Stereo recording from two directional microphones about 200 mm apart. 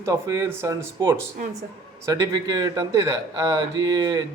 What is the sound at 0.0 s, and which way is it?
Speech, 15° right (ahead or behind).